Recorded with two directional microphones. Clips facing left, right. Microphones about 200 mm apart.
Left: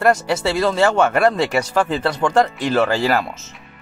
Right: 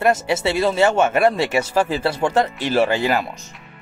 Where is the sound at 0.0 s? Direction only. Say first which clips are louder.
Left 1 dB; 20° right (ahead or behind).